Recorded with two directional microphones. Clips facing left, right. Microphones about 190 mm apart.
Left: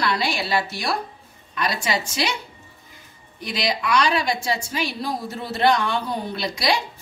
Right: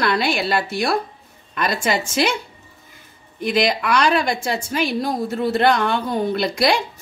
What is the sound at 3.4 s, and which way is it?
A woman's voice, 50° right (ahead or behind).